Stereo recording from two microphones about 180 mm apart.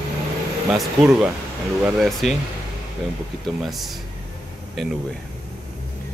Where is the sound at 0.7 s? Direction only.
Centre (ahead or behind).